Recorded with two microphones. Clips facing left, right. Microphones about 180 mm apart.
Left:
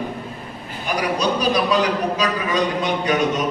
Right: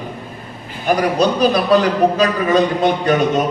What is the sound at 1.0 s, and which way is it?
Speech, 55° right (ahead or behind).